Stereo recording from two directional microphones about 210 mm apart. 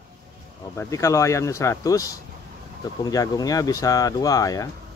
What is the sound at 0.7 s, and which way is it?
Speech, 15° left (ahead or behind).